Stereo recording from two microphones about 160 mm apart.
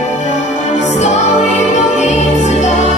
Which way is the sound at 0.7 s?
45° left (ahead or behind).